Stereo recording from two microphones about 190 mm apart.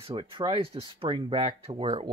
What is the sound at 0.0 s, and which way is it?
Speech, 30° right (ahead or behind).